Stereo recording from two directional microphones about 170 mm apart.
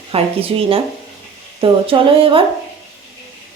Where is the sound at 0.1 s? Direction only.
35° right (ahead or behind).